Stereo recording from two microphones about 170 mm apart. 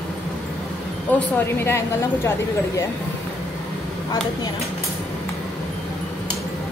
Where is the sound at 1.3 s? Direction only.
15° left (ahead or behind).